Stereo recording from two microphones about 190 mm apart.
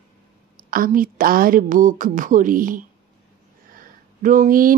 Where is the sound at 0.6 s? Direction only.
50° right (ahead or behind).